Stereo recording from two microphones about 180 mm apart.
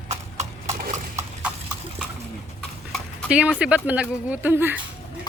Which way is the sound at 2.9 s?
5° right (ahead or behind).